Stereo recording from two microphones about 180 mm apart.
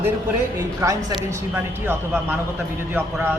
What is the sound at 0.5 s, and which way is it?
A man's voice, 15° right (ahead or behind).